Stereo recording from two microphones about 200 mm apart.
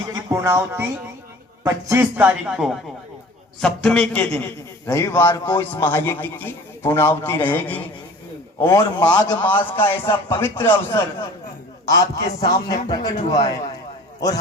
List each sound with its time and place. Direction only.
0.1 s a man's voice: 15° right (ahead or behind); by 9.4 s 20° left (ahead or behind)
9.4 s a man's voice: 10° left (ahead or behind)
11.9 s a man's voice: 20° left (ahead or behind)